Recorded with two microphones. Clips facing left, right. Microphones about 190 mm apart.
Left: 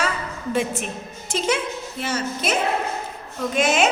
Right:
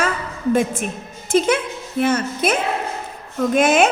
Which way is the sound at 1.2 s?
55° right (ahead or behind).